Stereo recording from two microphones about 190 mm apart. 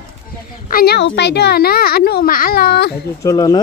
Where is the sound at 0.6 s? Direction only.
55° left (ahead or behind).